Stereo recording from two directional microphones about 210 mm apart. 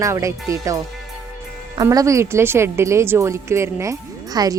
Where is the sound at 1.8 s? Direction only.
15° right (ahead or behind).